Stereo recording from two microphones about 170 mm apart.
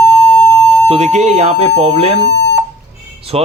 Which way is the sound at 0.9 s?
40° right (ahead or behind).